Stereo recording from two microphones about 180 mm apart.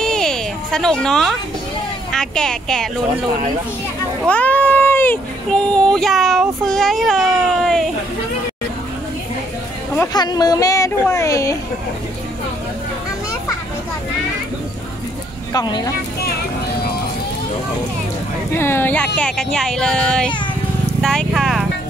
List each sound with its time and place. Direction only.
0.0 s a sound: 5° left (ahead or behind)
2.1 s speech: 5° left (ahead or behind)
4.3 s speech: 10° left (ahead or behind)
10.1 s speech: 20° left (ahead or behind)
15.5 s speech: 20° left (ahead or behind)
18.6 s speech: 15° left (ahead or behind)
21.0 s clip-clop: 5° left (ahead or behind)